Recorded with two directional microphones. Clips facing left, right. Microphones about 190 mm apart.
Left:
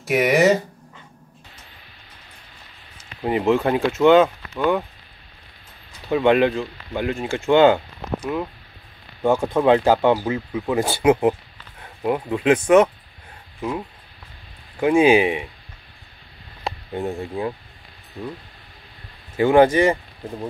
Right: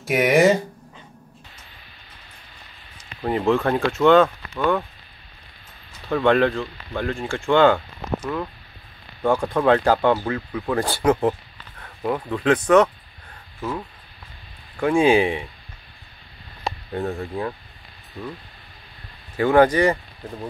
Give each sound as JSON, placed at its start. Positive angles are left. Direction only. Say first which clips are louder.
{"t": 0.0, "sound": "speech", "louder": "even", "side_deg": 0}
{"t": 3.2, "sound": "speech", "louder": "left 1 dB", "side_deg": 15}
{"t": 6.0, "sound": "speech", "louder": "left 1 dB", "side_deg": 15}
{"t": 16.9, "sound": "speech", "louder": "even", "side_deg": 10}
{"t": 19.3, "sound": "speech", "louder": "left 2 dB", "side_deg": 25}